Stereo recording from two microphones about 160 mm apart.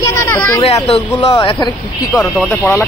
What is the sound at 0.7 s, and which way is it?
Speech, 30° left (ahead or behind).